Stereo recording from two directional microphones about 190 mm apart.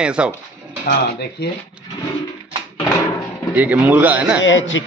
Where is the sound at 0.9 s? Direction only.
60° left (ahead or behind).